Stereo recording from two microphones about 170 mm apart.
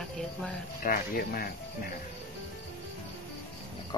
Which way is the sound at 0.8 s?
60° left (ahead or behind).